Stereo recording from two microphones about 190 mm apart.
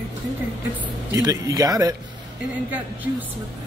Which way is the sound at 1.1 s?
20° right (ahead or behind).